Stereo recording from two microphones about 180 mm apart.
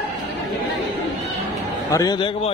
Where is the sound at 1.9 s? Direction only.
20° left (ahead or behind).